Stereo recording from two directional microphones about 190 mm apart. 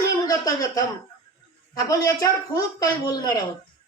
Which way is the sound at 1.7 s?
15° left (ahead or behind).